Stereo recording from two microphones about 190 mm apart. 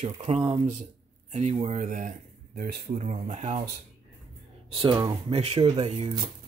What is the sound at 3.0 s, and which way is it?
Speech, 35° right (ahead or behind).